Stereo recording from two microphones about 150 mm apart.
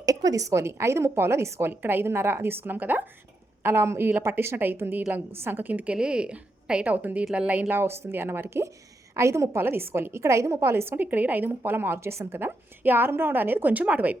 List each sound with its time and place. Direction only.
0.0 s a woman's voice: 25° right (ahead or behind)